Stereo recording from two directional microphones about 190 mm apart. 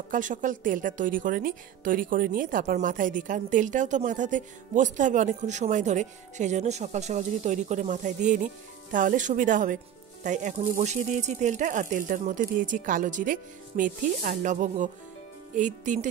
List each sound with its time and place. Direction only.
0.1 s a woman's voice: 45° right (ahead or behind)